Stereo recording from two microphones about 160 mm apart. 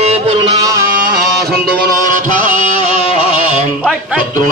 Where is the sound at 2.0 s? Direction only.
55° right (ahead or behind).